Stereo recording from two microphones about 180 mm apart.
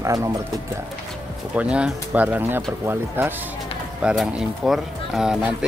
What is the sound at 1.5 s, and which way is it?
Speech, 5° right (ahead or behind).